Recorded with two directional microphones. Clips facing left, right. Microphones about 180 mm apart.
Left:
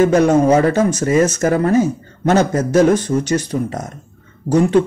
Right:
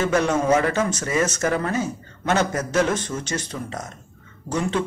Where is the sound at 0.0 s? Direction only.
40° left (ahead or behind).